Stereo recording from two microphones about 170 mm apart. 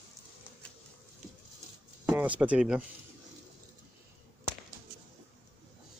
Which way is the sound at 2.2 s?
10° right (ahead or behind).